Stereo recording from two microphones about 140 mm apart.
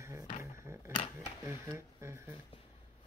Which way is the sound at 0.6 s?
20° right (ahead or behind).